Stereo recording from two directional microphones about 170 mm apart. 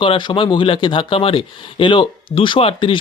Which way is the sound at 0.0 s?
30° left (ahead or behind).